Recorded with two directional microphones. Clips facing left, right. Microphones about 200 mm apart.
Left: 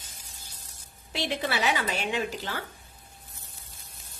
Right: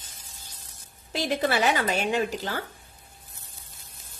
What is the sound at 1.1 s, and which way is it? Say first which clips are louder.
A woman's voice: right 4 dB; 50° right (ahead or behind).